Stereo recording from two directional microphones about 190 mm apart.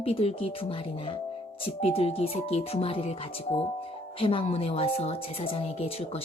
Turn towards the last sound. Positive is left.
turn(degrees=30)  # may be behind; listen again after turning